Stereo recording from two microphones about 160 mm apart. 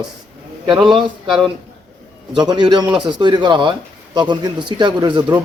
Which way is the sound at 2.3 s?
25° right (ahead or behind).